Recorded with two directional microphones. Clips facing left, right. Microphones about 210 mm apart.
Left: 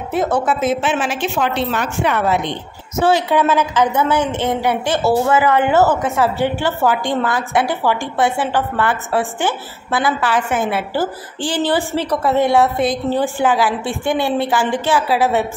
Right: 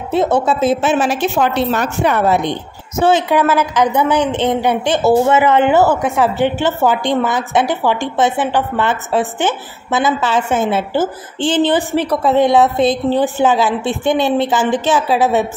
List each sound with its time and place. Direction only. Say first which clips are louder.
0.1 s a woman's voice: right 3 dB; 25° right (ahead or behind)
3.0 s a woman's voice: right 2 dB; 20° right (ahead or behind)